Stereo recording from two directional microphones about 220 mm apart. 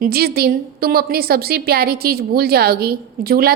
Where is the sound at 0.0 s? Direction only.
45° right (ahead or behind).